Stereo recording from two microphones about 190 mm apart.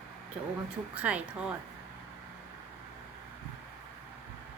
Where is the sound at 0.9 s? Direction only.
5° right (ahead or behind).